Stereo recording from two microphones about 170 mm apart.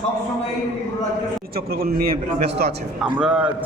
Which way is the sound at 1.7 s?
60° right (ahead or behind).